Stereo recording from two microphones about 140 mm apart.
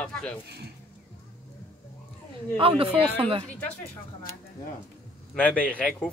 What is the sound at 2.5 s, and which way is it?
Speech, 40° right (ahead or behind).